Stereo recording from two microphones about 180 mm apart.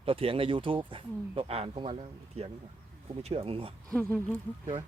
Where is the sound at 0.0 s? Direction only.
30° right (ahead or behind).